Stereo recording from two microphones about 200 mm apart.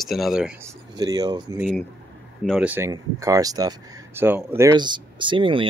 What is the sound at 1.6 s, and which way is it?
Speech, centre (ahead or behind).